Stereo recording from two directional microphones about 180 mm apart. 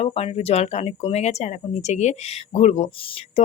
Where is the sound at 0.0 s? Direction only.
35° left (ahead or behind).